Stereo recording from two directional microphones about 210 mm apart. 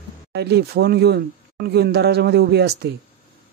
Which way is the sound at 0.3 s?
50° right (ahead or behind).